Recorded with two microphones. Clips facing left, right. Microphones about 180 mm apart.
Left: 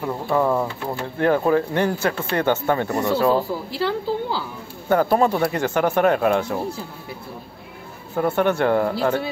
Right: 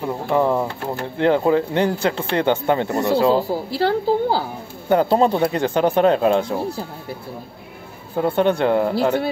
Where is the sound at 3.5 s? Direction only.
35° right (ahead or behind).